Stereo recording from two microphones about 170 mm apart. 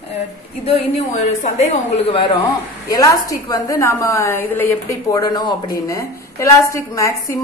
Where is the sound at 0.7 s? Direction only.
35° left (ahead or behind).